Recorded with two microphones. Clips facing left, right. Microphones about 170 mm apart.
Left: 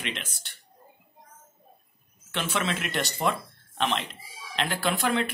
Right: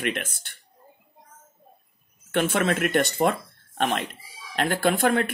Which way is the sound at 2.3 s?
55° right (ahead or behind).